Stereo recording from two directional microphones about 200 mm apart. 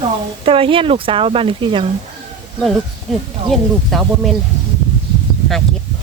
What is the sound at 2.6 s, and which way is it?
Speech, centre (ahead or behind).